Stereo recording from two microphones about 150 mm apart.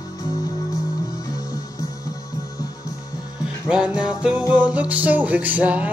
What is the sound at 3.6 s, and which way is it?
Music, 5° right (ahead or behind).